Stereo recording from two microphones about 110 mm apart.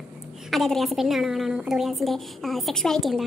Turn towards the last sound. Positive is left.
turn(degrees=0)  # may be behind; listen again after turning